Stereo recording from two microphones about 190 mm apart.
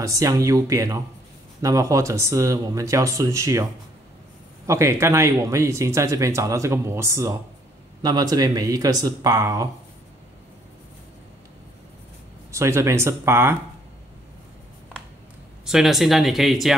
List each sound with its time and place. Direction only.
0.0 s speech: 20° right (ahead or behind)
4.6 s speech: 15° right (ahead or behind)
12.4 s speech: 15° right (ahead or behind)
15.6 s speech: centre (ahead or behind)